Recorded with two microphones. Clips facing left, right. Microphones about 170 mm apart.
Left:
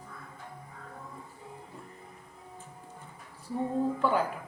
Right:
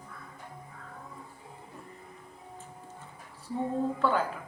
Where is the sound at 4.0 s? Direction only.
15° left (ahead or behind).